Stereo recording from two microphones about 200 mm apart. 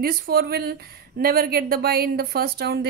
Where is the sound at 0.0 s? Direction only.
45° right (ahead or behind).